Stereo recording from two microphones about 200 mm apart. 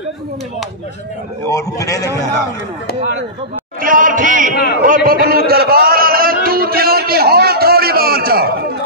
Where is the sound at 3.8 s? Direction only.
40° right (ahead or behind).